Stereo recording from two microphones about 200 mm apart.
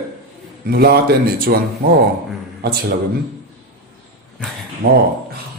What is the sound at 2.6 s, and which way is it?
Speech, 50° right (ahead or behind).